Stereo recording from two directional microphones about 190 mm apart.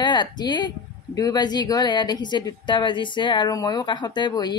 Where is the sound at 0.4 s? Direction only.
20° left (ahead or behind).